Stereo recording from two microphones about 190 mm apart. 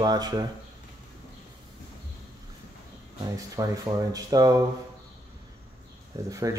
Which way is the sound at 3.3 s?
15° right (ahead or behind).